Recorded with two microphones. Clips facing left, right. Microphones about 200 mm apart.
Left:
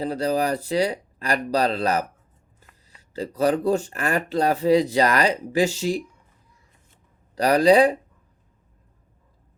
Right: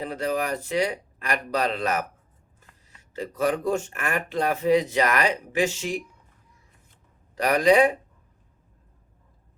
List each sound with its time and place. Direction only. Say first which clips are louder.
0.0 s speech: left 4 dB; 35° left (ahead or behind)
3.1 s speech: left 4 dB; 35° left (ahead or behind)
7.3 s speech: left 3 dB; 35° left (ahead or behind)